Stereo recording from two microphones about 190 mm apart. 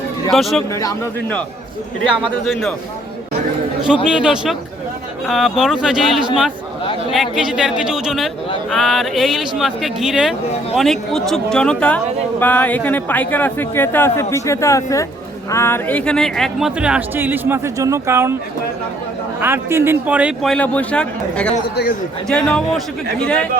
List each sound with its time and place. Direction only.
0.3 s speech: centre (ahead or behind)
2.0 s speech: centre (ahead or behind)
4.1 s a man's voice: 5° right (ahead or behind)
19.4 s speech: 10° right (ahead or behind); by 23.5 s 5° left (ahead or behind)